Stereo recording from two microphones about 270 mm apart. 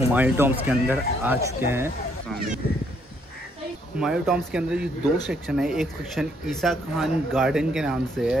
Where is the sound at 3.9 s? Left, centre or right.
Centre.